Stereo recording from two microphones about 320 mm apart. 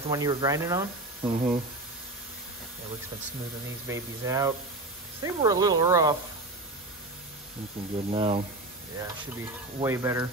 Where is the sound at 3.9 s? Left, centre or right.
Centre.